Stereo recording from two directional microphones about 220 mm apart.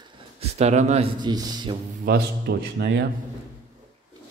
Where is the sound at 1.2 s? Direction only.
20° right (ahead or behind).